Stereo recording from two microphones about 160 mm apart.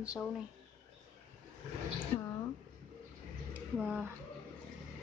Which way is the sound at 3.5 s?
5° right (ahead or behind).